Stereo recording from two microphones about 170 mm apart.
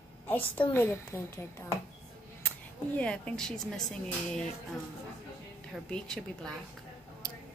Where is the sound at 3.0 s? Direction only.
5° left (ahead or behind).